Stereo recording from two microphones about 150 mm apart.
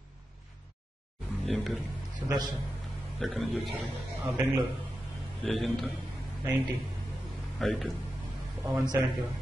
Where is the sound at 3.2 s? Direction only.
5° left (ahead or behind).